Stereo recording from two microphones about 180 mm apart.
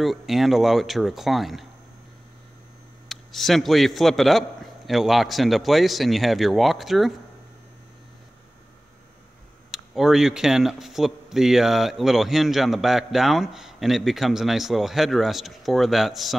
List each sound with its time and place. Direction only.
0.0 s speech: centre (ahead or behind)
3.1 s speech: centre (ahead or behind)
9.7 s speech: centre (ahead or behind)